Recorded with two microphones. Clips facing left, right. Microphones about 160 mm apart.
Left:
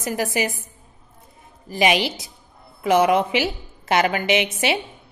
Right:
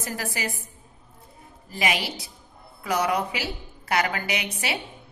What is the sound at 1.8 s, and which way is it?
A woman's voice, 20° left (ahead or behind).